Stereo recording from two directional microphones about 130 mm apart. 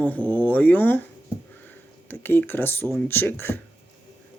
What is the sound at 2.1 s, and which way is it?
Speech, 15° left (ahead or behind).